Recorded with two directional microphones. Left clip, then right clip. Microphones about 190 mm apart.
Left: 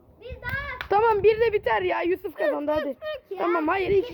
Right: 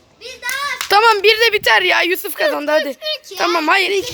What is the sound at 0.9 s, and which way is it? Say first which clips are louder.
A child's voice: right 8 dB; 10° right (ahead or behind).